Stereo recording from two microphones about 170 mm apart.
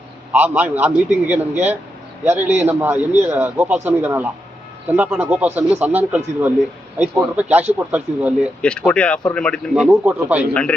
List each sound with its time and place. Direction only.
0.3 s a man's voice: 10° right (ahead or behind)
8.9 s speech: 5° left (ahead or behind)
9.9 s a man's voice: 10° right (ahead or behind)
10.5 s speech: 5° left (ahead or behind)